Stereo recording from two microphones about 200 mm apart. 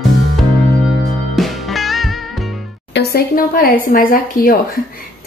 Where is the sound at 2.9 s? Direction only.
55° left (ahead or behind).